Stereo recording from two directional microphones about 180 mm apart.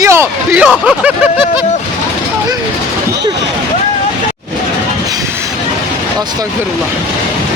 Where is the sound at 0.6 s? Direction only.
5° right (ahead or behind).